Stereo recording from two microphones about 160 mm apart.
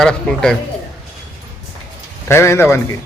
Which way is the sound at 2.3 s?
15° left (ahead or behind).